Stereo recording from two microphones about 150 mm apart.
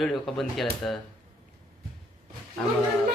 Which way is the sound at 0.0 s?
Centre (ahead or behind).